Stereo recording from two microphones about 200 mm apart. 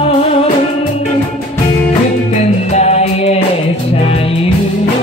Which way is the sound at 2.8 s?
35° left (ahead or behind).